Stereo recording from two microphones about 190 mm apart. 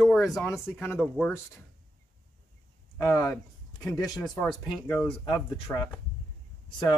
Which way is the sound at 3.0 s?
15° left (ahead or behind).